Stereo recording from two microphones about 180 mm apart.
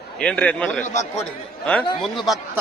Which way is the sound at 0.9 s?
35° left (ahead or behind).